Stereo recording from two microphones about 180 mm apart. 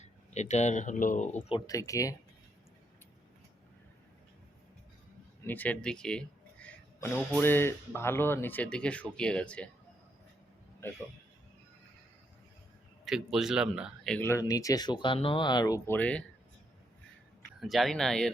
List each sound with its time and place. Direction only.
0.0 s speech: 40° left (ahead or behind)
1.5 s speech: 20° left (ahead or behind)
5.5 s speech: 10° left (ahead or behind)
13.1 s speech: centre (ahead or behind); by 16.0 s 20° left (ahead or behind)
16.0 s speech: 5° left (ahead or behind)
17.6 s speech: centre (ahead or behind)